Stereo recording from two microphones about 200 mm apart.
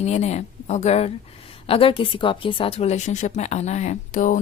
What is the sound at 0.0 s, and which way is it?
A woman's voice, 35° left (ahead or behind).